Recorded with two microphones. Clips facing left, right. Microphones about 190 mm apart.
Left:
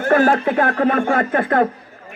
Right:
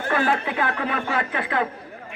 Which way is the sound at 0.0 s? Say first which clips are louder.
Left 8 dB; 45° left (ahead or behind).